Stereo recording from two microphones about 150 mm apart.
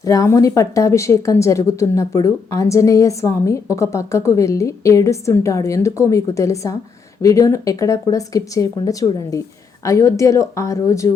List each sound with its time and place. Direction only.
0.0 s a woman's voice: 25° left (ahead or behind)